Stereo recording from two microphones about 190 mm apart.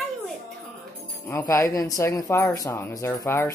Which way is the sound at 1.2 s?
15° left (ahead or behind).